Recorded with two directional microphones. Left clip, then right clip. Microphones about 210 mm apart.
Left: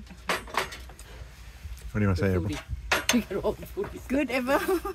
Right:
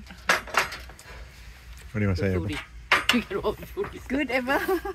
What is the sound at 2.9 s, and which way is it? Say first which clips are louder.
Speech: right 3 dB; 45° left (ahead or behind).